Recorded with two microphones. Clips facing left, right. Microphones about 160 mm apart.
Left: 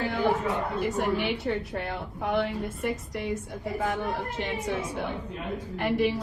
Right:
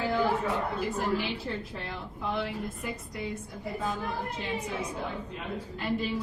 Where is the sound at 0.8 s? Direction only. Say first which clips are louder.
Left 3 dB; 75° left (ahead or behind).